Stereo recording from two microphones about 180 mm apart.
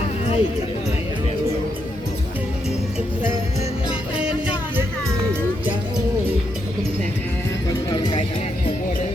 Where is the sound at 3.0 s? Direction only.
10° right (ahead or behind).